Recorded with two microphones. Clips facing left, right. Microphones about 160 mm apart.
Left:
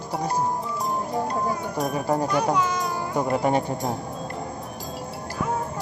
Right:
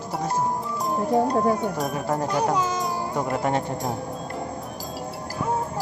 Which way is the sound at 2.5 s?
40° right (ahead or behind).